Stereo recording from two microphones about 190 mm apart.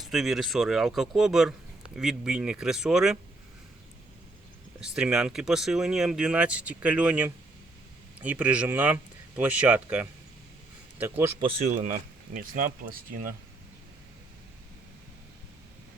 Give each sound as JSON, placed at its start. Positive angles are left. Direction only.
{"t": 0.0, "sound": "speech", "side_deg": 0}
{"t": 4.8, "sound": "speech", "side_deg": -5}
{"t": 11.3, "sound": "speech", "side_deg": -30}
{"t": 11.7, "sound": "speech", "side_deg": -40}